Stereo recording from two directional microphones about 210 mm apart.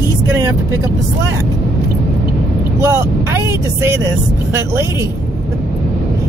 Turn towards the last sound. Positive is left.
turn(degrees=-15)  # may be behind; listen again after turning